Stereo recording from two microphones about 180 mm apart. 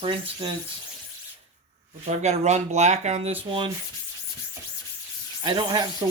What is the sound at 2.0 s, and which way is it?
Speech, 40° right (ahead or behind).